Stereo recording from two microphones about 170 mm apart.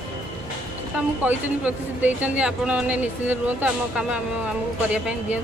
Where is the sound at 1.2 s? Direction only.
10° right (ahead or behind).